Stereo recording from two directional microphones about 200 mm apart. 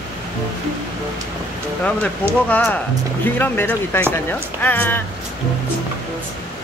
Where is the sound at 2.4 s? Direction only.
10° left (ahead or behind).